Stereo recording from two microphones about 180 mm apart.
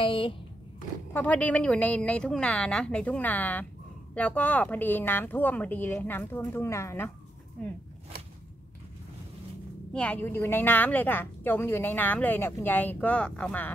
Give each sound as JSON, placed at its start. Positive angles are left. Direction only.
{"t": 0.0, "sound": "speech", "side_deg": 30}
{"t": 1.1, "sound": "a woman's voice", "side_deg": 10}
{"t": 9.9, "sound": "a woman's voice", "side_deg": 10}